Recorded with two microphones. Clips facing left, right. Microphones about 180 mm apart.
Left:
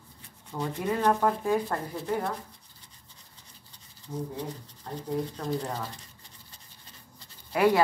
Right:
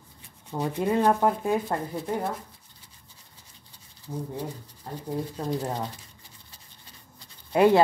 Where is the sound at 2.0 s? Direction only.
Centre (ahead or behind).